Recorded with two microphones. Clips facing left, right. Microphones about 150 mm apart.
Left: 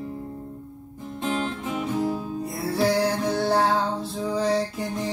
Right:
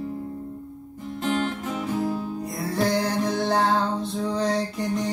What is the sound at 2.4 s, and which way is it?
Music, 5° left (ahead or behind).